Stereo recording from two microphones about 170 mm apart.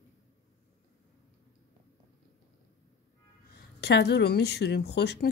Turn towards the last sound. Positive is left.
turn(degrees=80)